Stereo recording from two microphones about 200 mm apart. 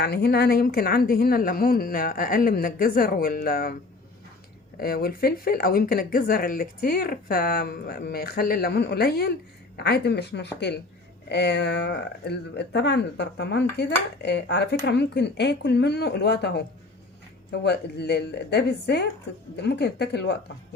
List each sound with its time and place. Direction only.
0.0 s speech: 55° left (ahead or behind)
4.8 s speech: 50° left (ahead or behind)